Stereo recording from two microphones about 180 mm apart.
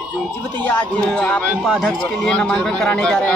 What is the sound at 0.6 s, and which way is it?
Speech, 10° left (ahead or behind).